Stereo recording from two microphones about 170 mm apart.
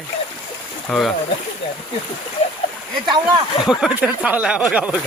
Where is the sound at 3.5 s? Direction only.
25° left (ahead or behind).